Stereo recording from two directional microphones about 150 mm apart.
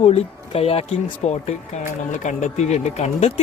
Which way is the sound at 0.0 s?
45° left (ahead or behind).